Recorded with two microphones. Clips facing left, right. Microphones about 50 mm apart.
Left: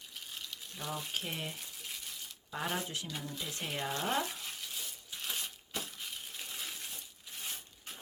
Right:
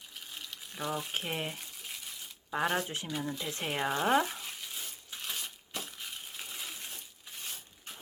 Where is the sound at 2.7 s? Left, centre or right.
Right; by 4.3 s centre.